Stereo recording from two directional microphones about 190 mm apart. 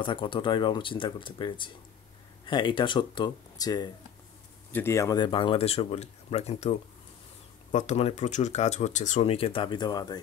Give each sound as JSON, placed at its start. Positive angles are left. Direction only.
{"t": 0.0, "sound": "speech", "side_deg": 25}